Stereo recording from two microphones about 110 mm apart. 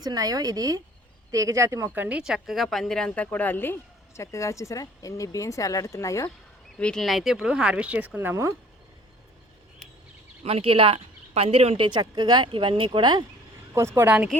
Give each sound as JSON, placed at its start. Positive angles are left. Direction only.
{"t": 0.0, "sound": "speech", "side_deg": -35}
{"t": 2.0, "sound": "speech", "side_deg": -10}
{"t": 6.7, "sound": "speech", "side_deg": 5}
{"t": 10.4, "sound": "speech", "side_deg": -60}
{"t": 11.8, "sound": "speech", "side_deg": -45}
{"t": 13.7, "sound": "speech", "side_deg": -20}